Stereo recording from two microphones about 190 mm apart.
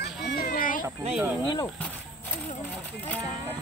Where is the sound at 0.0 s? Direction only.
50° left (ahead or behind).